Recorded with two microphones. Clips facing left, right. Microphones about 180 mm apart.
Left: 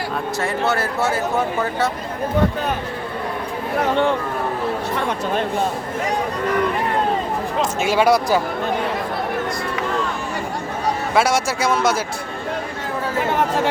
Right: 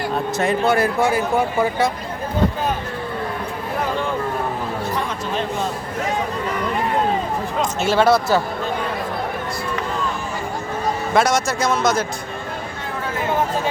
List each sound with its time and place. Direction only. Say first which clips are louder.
0.3 s speech: right 4 dB; 15° right (ahead or behind)
3.8 s speech: left 5 dB; 70° left (ahead or behind)
7.8 s speech: right 1 dB; 10° left (ahead or behind)
11.1 s speech: right 1 dB; 10° left (ahead or behind)
13.3 s chatter: even; 80° left